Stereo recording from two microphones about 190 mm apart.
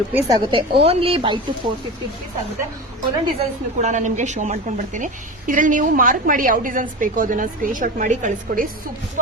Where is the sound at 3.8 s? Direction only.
40° right (ahead or behind).